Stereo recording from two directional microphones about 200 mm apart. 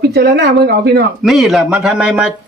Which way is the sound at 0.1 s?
55° right (ahead or behind).